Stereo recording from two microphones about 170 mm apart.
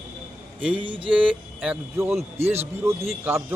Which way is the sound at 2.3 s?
40° right (ahead or behind).